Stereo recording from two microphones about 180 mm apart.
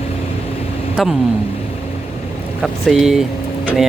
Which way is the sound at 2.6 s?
Centre (ahead or behind).